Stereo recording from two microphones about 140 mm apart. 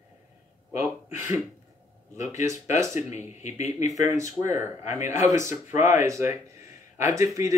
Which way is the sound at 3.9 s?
20° right (ahead or behind).